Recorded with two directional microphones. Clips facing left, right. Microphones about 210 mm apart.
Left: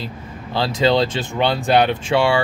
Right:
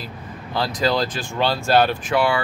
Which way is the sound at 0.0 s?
25° left (ahead or behind).